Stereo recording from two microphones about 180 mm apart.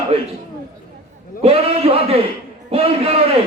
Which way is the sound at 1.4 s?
35° right (ahead or behind).